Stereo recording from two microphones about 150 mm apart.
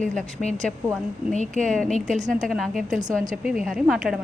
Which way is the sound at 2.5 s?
Centre (ahead or behind).